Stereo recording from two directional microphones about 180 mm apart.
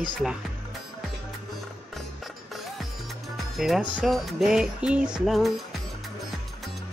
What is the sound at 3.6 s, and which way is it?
Music, centre (ahead or behind).